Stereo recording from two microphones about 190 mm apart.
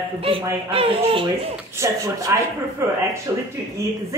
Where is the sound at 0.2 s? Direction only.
30° right (ahead or behind).